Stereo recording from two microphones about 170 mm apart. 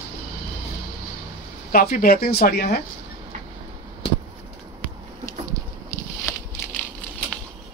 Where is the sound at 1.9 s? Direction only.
60° left (ahead or behind).